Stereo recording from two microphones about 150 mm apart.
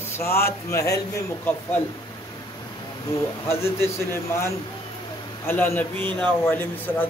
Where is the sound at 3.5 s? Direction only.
15° left (ahead or behind).